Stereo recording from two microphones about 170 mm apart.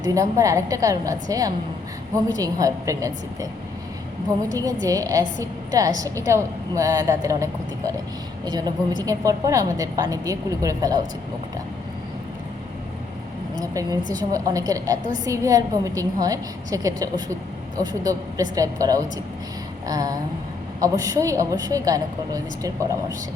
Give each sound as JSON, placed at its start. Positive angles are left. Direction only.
{"t": 0.0, "sound": "a woman's voice", "side_deg": -20}
{"t": 4.5, "sound": "a woman's voice", "side_deg": -20}
{"t": 13.6, "sound": "a woman's voice", "side_deg": -20}